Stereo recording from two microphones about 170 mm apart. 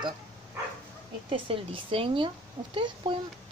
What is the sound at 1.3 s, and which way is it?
Speech, 30° right (ahead or behind).